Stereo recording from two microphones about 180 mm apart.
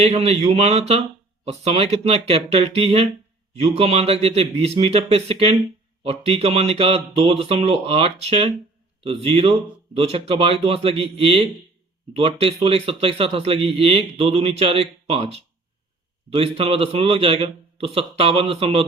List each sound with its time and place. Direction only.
0.0 s speech: 35° right (ahead or behind)